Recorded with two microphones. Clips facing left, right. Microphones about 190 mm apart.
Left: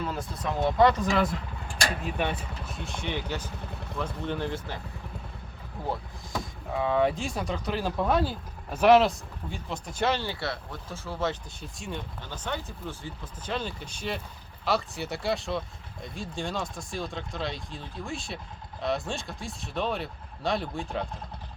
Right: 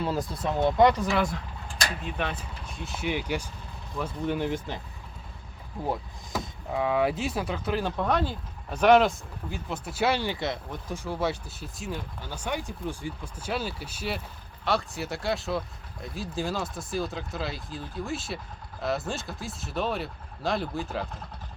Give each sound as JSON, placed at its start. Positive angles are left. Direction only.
{"t": 0.0, "sound": "speech", "side_deg": -30}
{"t": 0.8, "sound": "speech", "side_deg": -15}
{"t": 1.2, "sound": "speech", "side_deg": 5}
{"t": 6.7, "sound": "speech", "side_deg": -10}